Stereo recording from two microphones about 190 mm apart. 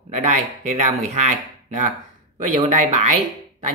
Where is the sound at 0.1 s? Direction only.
35° right (ahead or behind).